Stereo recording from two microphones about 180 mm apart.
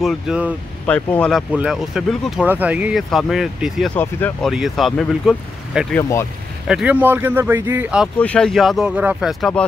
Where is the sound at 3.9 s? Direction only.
10° left (ahead or behind).